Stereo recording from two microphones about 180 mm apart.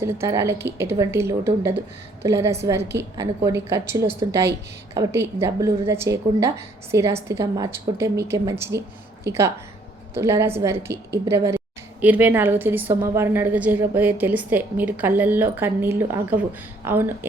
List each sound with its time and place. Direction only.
0.0 s a woman's voice: 15° right (ahead or behind)
10.2 s a woman's voice: 15° right (ahead or behind)